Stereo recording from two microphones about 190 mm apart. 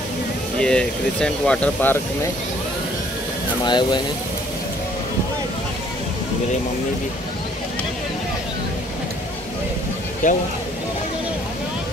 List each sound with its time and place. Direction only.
0.6 s speech: 5° left (ahead or behind)
3.6 s speech: 25° left (ahead or behind)
10.2 s speech: 45° left (ahead or behind)